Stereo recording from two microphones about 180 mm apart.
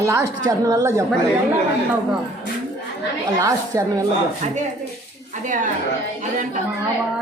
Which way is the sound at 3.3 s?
20° right (ahead or behind).